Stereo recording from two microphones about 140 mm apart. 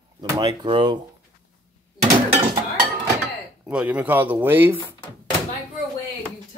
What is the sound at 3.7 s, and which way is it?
Speech, 10° right (ahead or behind).